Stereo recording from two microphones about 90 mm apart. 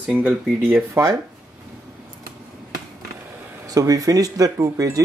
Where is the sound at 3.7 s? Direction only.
40° right (ahead or behind).